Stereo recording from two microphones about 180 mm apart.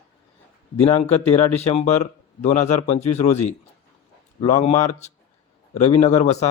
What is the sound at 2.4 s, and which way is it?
Speech, 40° left (ahead or behind).